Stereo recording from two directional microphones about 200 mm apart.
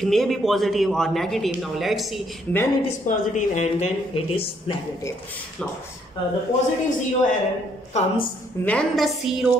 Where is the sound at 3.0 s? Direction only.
40° left (ahead or behind).